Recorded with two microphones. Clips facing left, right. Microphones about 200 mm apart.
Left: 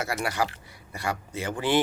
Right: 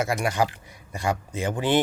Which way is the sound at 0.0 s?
15° right (ahead or behind).